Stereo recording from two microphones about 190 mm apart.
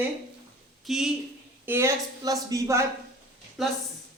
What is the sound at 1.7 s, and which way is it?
A woman's voice, 15° right (ahead or behind).